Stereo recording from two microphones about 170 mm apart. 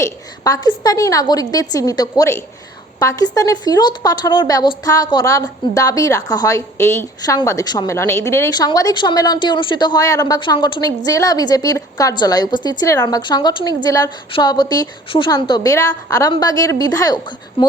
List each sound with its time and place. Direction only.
0.0 s a woman's voice: 20° left (ahead or behind)